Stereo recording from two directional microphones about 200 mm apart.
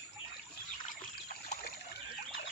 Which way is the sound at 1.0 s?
50° left (ahead or behind).